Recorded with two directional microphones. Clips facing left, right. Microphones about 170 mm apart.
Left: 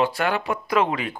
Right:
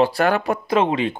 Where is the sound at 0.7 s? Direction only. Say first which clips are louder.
Right 3 dB; 25° right (ahead or behind).